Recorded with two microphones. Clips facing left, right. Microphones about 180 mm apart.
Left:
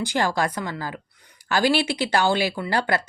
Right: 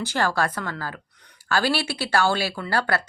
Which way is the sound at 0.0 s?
15° left (ahead or behind).